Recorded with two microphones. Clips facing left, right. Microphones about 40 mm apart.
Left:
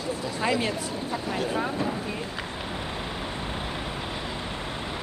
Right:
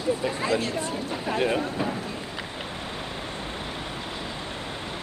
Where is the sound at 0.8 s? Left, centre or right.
Right.